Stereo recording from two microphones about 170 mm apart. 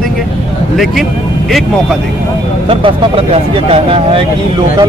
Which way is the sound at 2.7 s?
35° right (ahead or behind).